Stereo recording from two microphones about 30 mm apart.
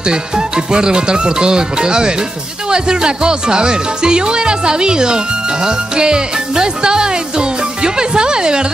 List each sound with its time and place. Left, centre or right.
0.0 s speech: right